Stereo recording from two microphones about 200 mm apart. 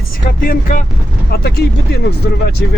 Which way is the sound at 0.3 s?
45° left (ahead or behind).